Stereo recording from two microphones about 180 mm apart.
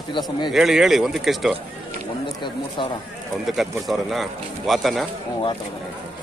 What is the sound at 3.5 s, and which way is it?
Speech, centre (ahead or behind).